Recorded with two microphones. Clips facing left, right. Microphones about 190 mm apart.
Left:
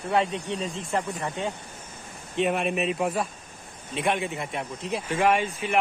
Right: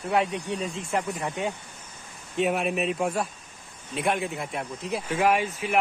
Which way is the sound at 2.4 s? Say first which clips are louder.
Even; centre (ahead or behind).